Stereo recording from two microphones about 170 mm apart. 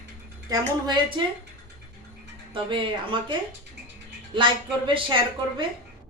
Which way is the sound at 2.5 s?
30° right (ahead or behind).